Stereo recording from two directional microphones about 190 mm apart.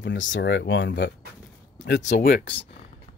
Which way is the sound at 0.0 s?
80° left.